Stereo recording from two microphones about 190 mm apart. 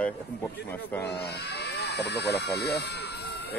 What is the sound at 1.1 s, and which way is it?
Speech, 60° left (ahead or behind).